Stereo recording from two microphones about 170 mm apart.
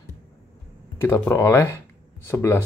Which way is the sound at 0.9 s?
15° left (ahead or behind).